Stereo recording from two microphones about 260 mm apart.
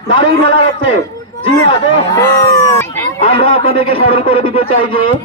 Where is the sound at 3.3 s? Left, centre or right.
Left.